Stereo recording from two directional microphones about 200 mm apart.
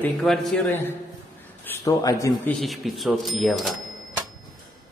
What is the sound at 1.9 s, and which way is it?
Speech, 15° left (ahead or behind).